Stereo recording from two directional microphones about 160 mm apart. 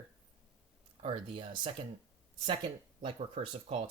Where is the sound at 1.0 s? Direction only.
35° right (ahead or behind).